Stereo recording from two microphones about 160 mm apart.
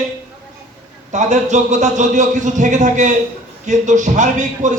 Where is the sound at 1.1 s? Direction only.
50° right (ahead or behind).